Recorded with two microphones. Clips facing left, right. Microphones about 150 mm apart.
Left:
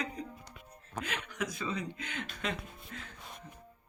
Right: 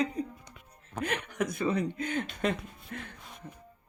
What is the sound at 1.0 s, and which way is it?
A woman's voice, 55° right (ahead or behind).